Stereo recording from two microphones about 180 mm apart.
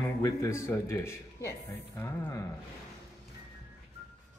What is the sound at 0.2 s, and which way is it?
Speech, 15° left (ahead or behind).